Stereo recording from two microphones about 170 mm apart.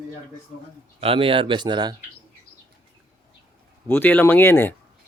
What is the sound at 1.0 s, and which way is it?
Speech, 30° right (ahead or behind).